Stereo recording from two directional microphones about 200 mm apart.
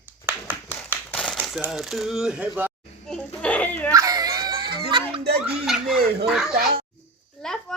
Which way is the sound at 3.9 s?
15° right (ahead or behind).